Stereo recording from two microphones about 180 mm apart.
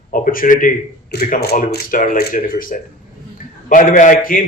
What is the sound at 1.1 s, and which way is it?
Speech, 60° left (ahead or behind).